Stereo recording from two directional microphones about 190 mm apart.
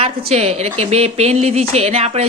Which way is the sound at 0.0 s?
30° right (ahead or behind).